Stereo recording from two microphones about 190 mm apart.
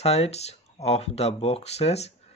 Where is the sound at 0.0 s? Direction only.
35° left (ahead or behind).